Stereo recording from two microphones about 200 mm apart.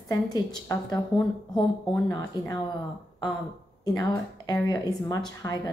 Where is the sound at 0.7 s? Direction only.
20° left (ahead or behind).